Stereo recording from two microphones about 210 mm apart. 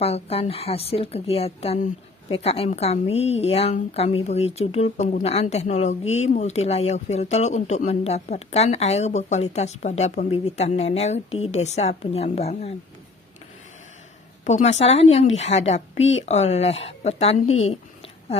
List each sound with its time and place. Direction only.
0.0 s a woman's voice: 30° left (ahead or behind)
14.4 s a woman's voice: 35° left (ahead or behind)